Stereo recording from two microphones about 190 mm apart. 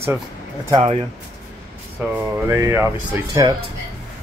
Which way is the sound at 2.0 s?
10° right (ahead or behind).